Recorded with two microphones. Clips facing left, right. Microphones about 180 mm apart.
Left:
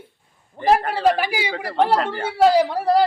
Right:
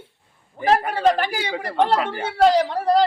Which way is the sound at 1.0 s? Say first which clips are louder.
Even; 10° left (ahead or behind).